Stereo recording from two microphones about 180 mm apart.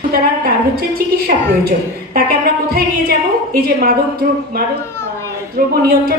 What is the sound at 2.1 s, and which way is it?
A woman's voice, 55° right (ahead or behind).